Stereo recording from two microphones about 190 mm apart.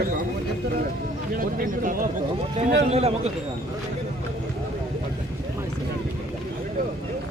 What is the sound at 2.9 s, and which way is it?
Speech, 35° right (ahead or behind).